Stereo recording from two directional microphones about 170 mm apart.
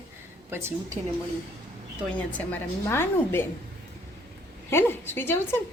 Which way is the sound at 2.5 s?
15° left (ahead or behind).